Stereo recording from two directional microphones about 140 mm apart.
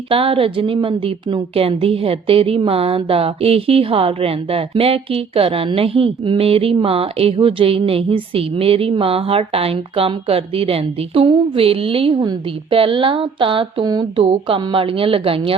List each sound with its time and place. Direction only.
0.1 s a woman's voice: 40° right (ahead or behind)
14.2 s speech: 40° right (ahead or behind)